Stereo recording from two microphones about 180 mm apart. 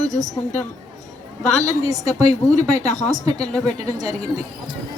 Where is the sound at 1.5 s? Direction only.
40° left (ahead or behind).